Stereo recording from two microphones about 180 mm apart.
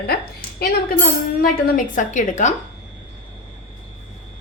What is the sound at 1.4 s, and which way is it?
A woman's voice, 50° left (ahead or behind).